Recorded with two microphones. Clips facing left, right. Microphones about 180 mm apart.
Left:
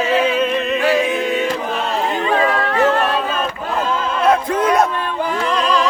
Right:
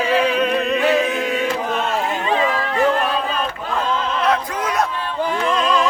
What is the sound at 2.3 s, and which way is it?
Music, 60° left (ahead or behind).